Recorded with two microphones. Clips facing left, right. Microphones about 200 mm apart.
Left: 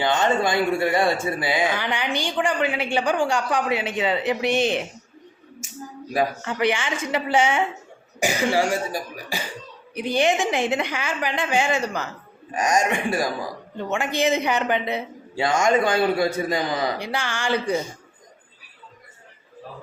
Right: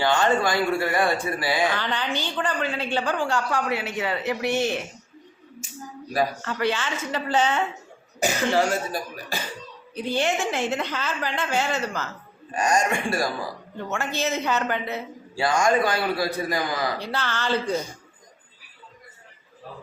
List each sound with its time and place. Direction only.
0.0 s speech: 20° left (ahead or behind)
6.1 s a woman's voice: 15° left (ahead or behind)
17.0 s speech: 15° left (ahead or behind)